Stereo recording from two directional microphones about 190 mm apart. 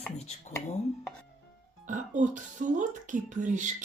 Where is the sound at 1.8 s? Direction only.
40° right (ahead or behind).